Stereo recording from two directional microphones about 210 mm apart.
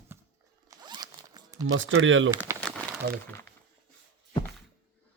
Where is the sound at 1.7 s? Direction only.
65° right (ahead or behind).